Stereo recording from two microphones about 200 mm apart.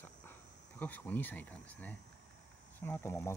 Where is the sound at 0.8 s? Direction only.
10° left (ahead or behind).